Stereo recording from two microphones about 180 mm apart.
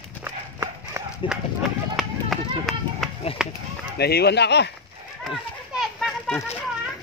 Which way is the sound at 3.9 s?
65° left (ahead or behind).